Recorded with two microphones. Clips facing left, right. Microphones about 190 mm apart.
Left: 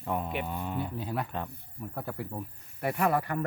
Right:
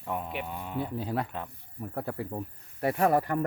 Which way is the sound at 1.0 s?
30° right (ahead or behind).